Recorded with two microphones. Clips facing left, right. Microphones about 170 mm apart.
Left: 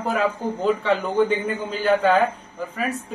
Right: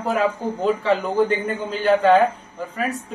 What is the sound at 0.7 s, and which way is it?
A woman's voice, centre (ahead or behind).